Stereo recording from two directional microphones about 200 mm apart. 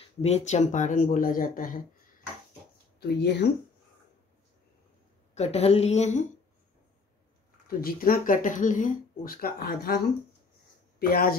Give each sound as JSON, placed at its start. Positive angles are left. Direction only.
{"t": 0.2, "sound": "speech", "side_deg": 35}
{"t": 3.0, "sound": "speech", "side_deg": 55}
{"t": 5.3, "sound": "a woman's voice", "side_deg": 30}
{"t": 7.8, "sound": "speech", "side_deg": 45}